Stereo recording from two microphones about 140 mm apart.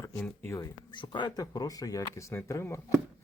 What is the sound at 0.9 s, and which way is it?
Speech, 35° left (ahead or behind).